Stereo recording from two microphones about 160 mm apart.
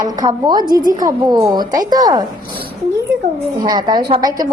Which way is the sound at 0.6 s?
60° right (ahead or behind).